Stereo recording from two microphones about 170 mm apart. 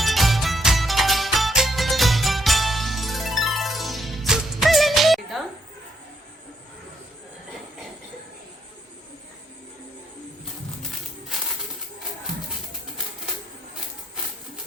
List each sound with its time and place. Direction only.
0.0 s music: centre (ahead or behind)